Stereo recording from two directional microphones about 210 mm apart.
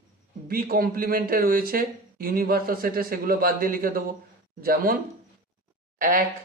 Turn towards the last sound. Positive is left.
turn(degrees=-40)  # may be behind; listen again after turning